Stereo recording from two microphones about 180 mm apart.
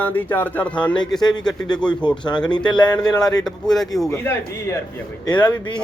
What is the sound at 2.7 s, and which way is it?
Speech, 25° left (ahead or behind).